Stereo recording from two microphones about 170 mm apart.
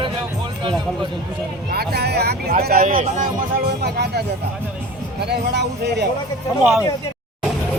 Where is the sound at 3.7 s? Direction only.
70° right (ahead or behind).